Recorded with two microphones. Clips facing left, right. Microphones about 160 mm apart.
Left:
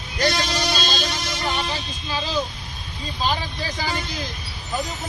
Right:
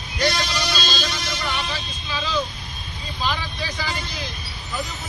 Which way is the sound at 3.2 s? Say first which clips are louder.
Left 2 dB; 40° left (ahead or behind).